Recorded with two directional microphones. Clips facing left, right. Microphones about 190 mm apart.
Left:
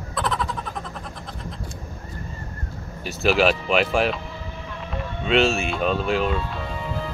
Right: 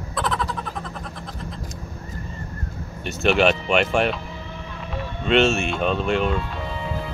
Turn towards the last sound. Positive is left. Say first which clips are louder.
# right 1 dB
turn(degrees=0)  # may be behind; listen again after turning